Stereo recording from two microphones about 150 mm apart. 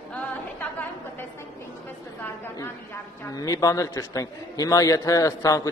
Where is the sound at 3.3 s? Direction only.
25° left (ahead or behind).